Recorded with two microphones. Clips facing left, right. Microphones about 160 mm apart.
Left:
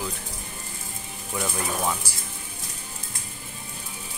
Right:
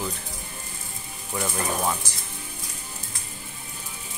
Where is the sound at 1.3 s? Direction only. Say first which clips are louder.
Right 1 dB; 5° right (ahead or behind).